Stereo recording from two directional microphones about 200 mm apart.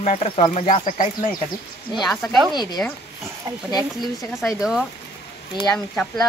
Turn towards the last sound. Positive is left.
turn(degrees=5)  # may be behind; listen again after turning